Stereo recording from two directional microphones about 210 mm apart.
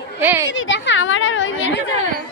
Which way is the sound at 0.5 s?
60° left (ahead or behind).